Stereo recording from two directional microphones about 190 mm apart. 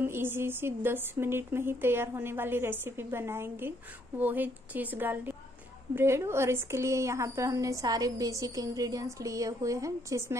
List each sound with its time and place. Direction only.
0.0 s a woman's voice: 10° right (ahead or behind)